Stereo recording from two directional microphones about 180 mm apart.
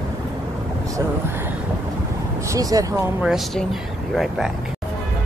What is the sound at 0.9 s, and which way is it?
Speech, 10° right (ahead or behind).